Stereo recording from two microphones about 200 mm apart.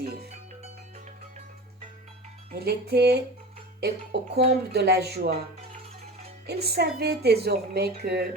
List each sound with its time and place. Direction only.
0.0 s music: 50° right (ahead or behind)
2.6 s a woman's voice: 50° right (ahead or behind)
6.5 s a woman's voice: 55° right (ahead or behind)